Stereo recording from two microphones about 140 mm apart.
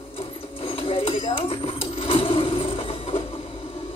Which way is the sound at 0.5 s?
40° left (ahead or behind).